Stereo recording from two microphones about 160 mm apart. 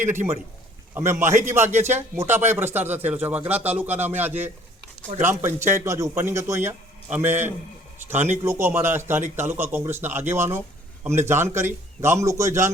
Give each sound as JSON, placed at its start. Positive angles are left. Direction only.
{"t": 0.0, "sound": "speech", "side_deg": -15}